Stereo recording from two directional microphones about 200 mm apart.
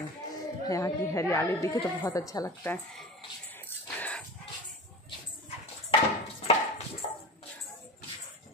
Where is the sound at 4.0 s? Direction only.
5° left (ahead or behind).